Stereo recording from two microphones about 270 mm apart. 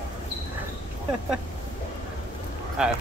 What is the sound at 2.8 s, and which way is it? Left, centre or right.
Speech, centre.